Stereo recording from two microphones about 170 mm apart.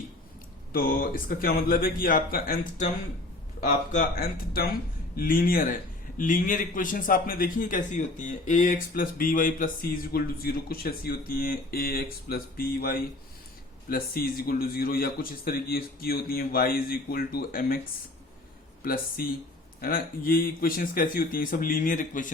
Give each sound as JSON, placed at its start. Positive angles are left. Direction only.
{"t": 0.7, "sound": "a man's voice", "side_deg": 60}
{"t": 18.8, "sound": "a man's voice", "side_deg": 60}